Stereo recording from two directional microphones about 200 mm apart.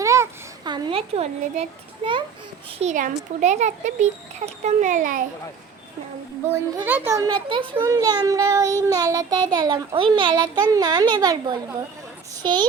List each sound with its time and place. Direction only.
0.0 s a sound: 15° right (ahead or behind); by 1.6 s 30° right (ahead or behind)
2.0 s a child's voice: 30° right (ahead or behind)
6.5 s a child's voice: 10° right (ahead or behind)